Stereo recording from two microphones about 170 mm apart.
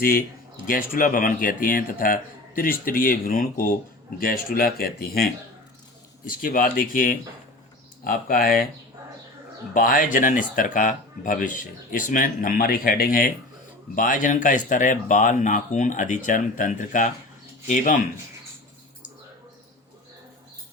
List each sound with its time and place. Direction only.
0.0 s speech: 55° left (ahead or behind)
9.7 s speech: 55° left (ahead or behind)